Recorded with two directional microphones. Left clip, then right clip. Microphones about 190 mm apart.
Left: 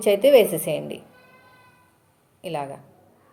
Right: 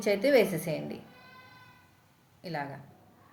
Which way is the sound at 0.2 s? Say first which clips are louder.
Left 10 dB; 20° left (ahead or behind).